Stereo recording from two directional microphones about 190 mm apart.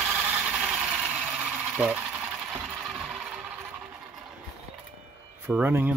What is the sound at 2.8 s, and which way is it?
Music, 5° right (ahead or behind).